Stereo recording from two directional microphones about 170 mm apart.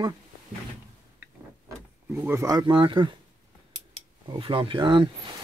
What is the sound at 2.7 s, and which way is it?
Speech, 30° right (ahead or behind).